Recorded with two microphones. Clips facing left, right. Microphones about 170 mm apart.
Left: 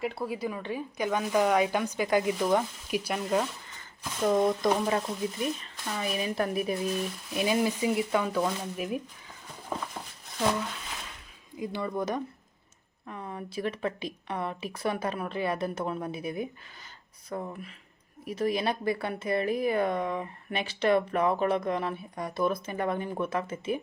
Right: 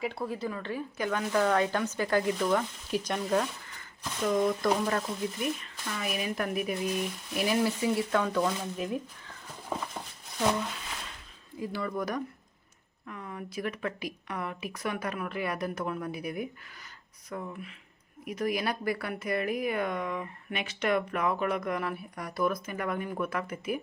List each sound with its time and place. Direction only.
0.0 s speech: 5° left (ahead or behind)
3.0 s speech: 5° left (ahead or behind)
4.3 s speech: 25° left (ahead or behind)
7.3 s speech: 20° left (ahead or behind)
9.6 s a sound: 5° right (ahead or behind)
11.5 s speech: 20° left (ahead or behind)